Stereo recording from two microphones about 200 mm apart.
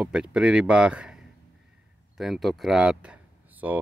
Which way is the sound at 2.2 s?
Centre (ahead or behind).